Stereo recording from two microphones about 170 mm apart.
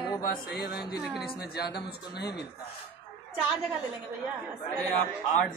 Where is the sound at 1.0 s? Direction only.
Centre (ahead or behind).